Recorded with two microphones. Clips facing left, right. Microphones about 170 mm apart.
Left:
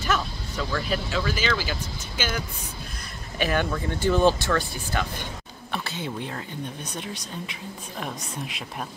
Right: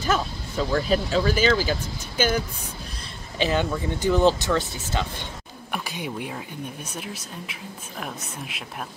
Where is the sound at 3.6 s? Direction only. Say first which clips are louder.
Right 1 dB; 15° right (ahead or behind).